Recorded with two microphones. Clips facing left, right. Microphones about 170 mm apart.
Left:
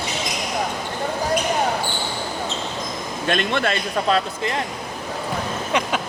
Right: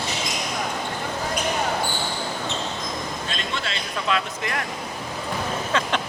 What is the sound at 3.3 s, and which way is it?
Speech, 60° left (ahead or behind).